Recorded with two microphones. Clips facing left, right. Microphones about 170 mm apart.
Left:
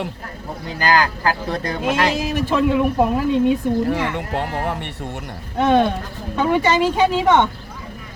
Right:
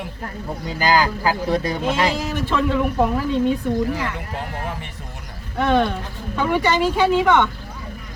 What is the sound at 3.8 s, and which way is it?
Speech, 70° left (ahead or behind).